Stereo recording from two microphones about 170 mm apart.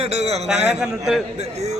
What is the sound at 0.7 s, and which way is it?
Speech, 5° right (ahead or behind).